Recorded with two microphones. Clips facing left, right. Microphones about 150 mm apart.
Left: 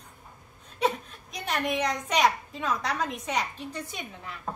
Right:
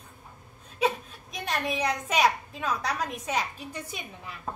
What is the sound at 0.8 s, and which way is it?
A woman's voice, centre (ahead or behind).